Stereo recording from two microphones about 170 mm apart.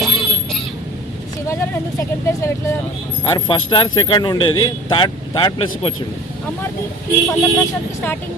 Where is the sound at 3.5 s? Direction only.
30° left (ahead or behind).